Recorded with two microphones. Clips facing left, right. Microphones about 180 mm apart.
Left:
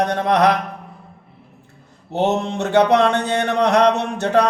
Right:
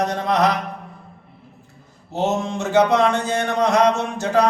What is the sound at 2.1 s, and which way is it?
Mantra, 65° left (ahead or behind).